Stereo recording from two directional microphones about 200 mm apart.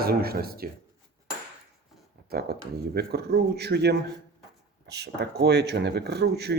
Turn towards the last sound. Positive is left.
turn(degrees=-55)  # may be behind; listen again after turning